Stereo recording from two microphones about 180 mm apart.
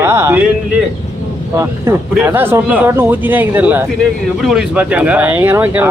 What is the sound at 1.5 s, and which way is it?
Speech, 15° right (ahead or behind).